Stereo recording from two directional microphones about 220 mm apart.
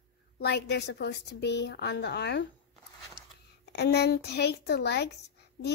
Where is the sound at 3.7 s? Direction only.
50° left (ahead or behind).